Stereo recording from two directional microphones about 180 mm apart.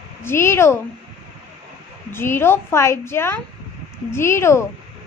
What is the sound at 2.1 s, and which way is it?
A woman's voice, 15° left (ahead or behind).